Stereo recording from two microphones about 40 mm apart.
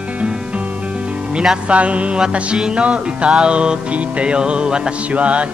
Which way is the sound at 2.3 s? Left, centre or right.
Right.